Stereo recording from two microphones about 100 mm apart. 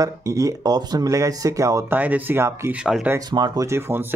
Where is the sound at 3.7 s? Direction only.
20° right (ahead or behind).